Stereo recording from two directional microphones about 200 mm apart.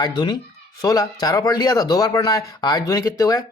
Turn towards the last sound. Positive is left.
turn(degrees=15)  # may be behind; listen again after turning